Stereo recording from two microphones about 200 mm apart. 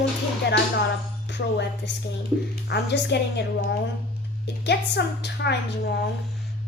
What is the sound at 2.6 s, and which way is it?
A woman's voice, 60° left (ahead or behind).